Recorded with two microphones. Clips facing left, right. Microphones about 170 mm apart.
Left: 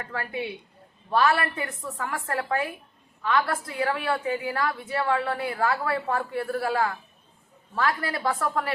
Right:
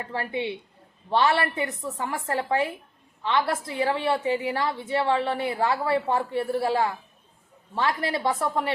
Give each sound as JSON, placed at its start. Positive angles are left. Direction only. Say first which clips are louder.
{"t": 0.0, "sound": "a woman's voice", "louder": "right 3 dB", "side_deg": -25}